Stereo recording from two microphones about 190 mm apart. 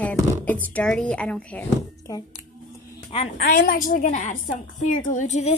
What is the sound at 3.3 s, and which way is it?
A woman's voice, 45° left (ahead or behind).